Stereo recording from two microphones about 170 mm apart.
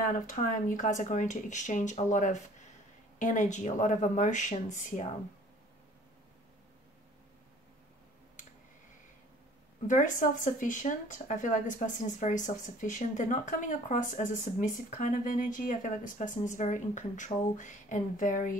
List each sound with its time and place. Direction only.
0.0 s speech: 50° left (ahead or behind)
9.8 s speech: 50° left (ahead or behind)